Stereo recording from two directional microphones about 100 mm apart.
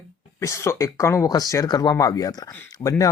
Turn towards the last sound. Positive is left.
turn(degrees=35)  # may be behind; listen again after turning